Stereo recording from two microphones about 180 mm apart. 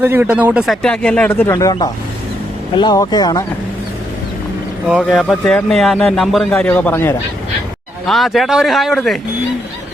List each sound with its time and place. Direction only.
0.0 s speech: 10° right (ahead or behind); by 1.5 s 10° left (ahead or behind)
1.5 s speech: 20° left (ahead or behind)
4.9 s speech: centre (ahead or behind)
8.0 s speech: centre (ahead or behind)